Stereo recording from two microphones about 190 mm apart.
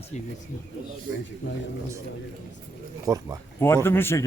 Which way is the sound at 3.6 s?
15° left (ahead or behind).